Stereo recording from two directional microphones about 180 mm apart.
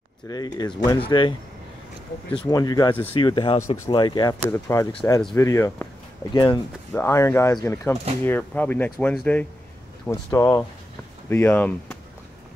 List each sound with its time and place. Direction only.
0.3 s speech: 20° left (ahead or behind)
2.3 s speech: 20° left (ahead or behind)
3.1 s speech: 25° left (ahead or behind)
3.5 s speech: 15° left (ahead or behind)
6.9 s speech: 15° left (ahead or behind)